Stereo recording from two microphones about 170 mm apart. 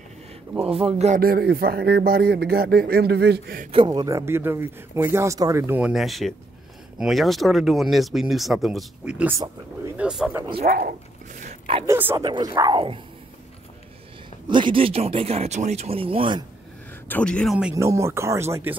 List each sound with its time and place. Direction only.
0.6 s speech: 35° right (ahead or behind)
1.2 s a man's voice: 65° right (ahead or behind)
3.7 s speech: 25° right (ahead or behind); by 10.3 s 5° right (ahead or behind)
10.3 s speech: 25° right (ahead or behind)
10.6 s a man's voice: 60° right (ahead or behind)
11.4 s a sound: 35° right (ahead or behind)
11.8 s speech: 15° right (ahead or behind)
14.5 s speech: 30° right (ahead or behind)
17.1 s speech: 5° left (ahead or behind)
17.7 s speech: 15° right (ahead or behind)